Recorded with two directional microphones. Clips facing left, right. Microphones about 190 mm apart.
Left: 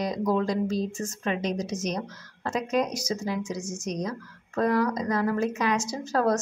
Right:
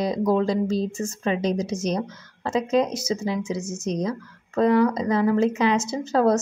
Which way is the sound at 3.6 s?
5° right (ahead or behind).